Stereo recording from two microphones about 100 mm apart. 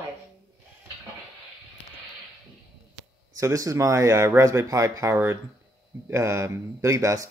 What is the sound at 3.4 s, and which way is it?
Speech, 30° right (ahead or behind).